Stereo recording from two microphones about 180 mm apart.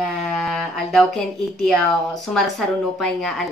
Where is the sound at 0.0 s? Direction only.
Centre (ahead or behind).